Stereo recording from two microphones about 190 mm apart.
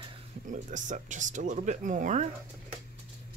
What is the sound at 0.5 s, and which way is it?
Speech, 40° right (ahead or behind).